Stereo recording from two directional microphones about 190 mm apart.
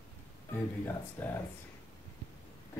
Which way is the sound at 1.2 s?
10° left (ahead or behind).